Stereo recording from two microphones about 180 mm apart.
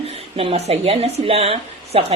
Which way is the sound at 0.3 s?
35° right (ahead or behind).